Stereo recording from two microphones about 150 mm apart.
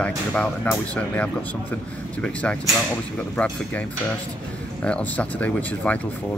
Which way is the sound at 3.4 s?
10° left (ahead or behind).